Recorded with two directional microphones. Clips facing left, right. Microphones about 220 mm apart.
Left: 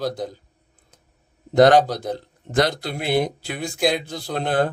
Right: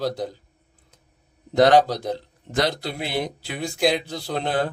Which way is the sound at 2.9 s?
50° left (ahead or behind).